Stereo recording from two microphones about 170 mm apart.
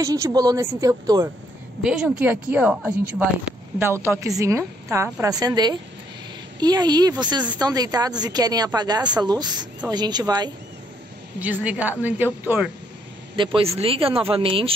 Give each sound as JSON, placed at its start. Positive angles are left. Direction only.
{"t": 0.0, "sound": "speech", "side_deg": -20}
{"t": 1.8, "sound": "a woman's voice", "side_deg": -5}
{"t": 11.3, "sound": "a woman's voice", "side_deg": -10}
{"t": 13.4, "sound": "speech", "side_deg": -30}